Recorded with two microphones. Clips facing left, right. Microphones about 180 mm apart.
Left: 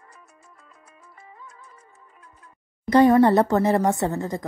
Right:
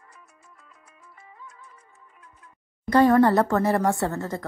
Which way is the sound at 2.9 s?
20° left (ahead or behind).